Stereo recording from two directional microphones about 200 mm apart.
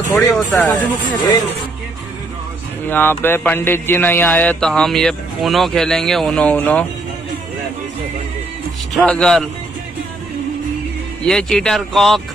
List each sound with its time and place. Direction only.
0.1 s speech: 10° left (ahead or behind)
2.9 s speech: 10° left (ahead or behind)
8.9 s speech: 5° left (ahead or behind)
11.2 s speech: 5° left (ahead or behind)